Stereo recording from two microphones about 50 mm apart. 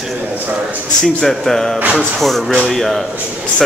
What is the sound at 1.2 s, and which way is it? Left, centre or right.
Speech, centre.